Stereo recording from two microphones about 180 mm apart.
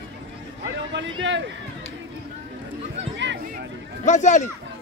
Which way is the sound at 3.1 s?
80° right.